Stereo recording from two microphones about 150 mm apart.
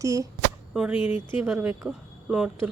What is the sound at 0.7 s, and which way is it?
Speech, 5° right (ahead or behind).